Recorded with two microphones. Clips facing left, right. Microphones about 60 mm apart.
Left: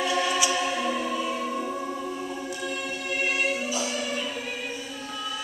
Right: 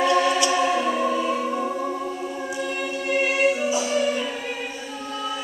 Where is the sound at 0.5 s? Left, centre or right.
Right.